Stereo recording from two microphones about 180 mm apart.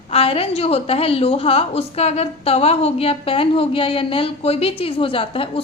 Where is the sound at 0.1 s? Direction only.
35° left (ahead or behind).